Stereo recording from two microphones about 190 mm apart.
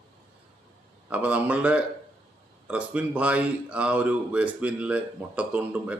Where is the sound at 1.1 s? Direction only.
10° right (ahead or behind).